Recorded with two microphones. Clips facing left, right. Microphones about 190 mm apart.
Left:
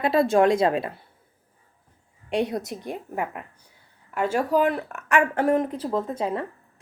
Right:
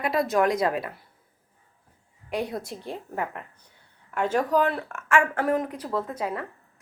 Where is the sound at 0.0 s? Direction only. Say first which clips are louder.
Left 4 dB; 30° left (ahead or behind).